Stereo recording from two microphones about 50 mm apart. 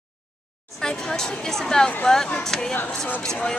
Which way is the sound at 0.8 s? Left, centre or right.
Centre.